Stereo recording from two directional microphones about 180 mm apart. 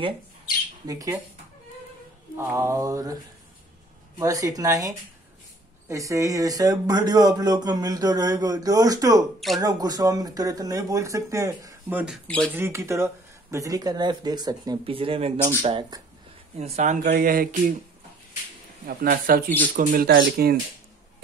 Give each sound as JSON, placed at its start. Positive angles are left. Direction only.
{"t": 0.8, "sound": "speech", "side_deg": -20}
{"t": 2.3, "sound": "mantra", "side_deg": -15}
{"t": 4.2, "sound": "speech", "side_deg": -20}
{"t": 18.9, "sound": "speech", "side_deg": -55}